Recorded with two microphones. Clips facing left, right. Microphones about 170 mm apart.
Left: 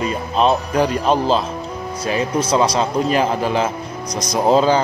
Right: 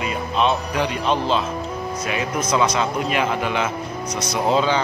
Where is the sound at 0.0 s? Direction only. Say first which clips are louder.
Left 3 dB; 35° left (ahead or behind).